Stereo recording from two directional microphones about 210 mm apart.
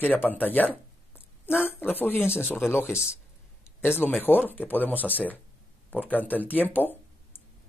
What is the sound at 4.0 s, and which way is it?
Speech, 10° left (ahead or behind).